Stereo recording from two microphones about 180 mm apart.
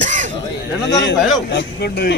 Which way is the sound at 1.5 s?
70° left (ahead or behind).